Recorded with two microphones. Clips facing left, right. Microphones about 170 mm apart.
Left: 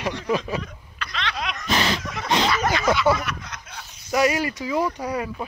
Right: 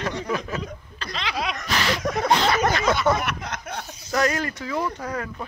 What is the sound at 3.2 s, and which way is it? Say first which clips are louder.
Snicker: right 3 dB; 60° right (ahead or behind).